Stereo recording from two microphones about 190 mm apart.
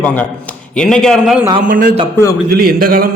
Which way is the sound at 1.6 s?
45° right (ahead or behind).